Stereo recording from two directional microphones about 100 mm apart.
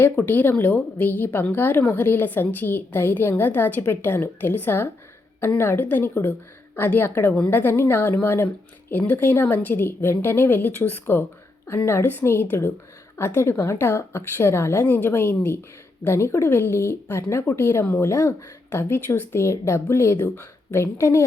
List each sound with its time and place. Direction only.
0.0 s speech: 20° left (ahead or behind)